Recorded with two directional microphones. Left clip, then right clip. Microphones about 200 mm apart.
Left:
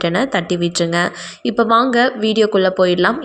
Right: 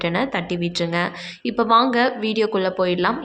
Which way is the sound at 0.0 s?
25° left (ahead or behind).